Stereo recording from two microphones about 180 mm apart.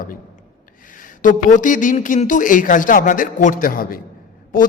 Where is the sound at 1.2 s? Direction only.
45° left (ahead or behind).